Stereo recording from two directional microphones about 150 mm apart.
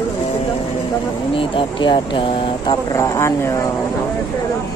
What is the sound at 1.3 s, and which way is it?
Speech, 35° left (ahead or behind).